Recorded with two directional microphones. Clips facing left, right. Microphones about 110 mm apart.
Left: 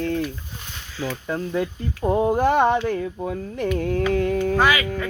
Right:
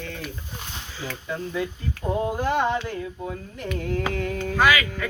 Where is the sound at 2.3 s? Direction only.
50° left (ahead or behind).